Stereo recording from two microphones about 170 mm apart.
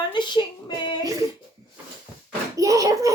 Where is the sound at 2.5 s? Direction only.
20° right (ahead or behind).